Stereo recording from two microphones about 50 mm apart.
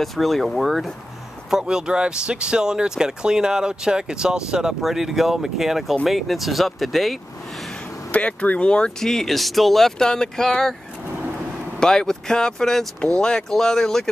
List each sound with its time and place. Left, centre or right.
0.0 s speech: centre
1.5 s speech: centre
8.1 s speech: left
9.0 s speech: centre
11.8 s speech: centre